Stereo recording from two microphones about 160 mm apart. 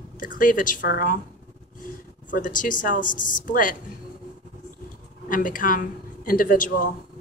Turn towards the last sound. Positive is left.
turn(degrees=60)  # may be behind; listen again after turning